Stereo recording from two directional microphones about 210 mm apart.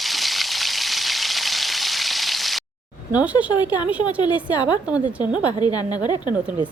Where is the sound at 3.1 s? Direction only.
5° right (ahead or behind).